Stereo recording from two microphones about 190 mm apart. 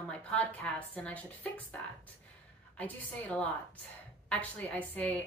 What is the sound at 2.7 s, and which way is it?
A woman's voice, 10° left (ahead or behind).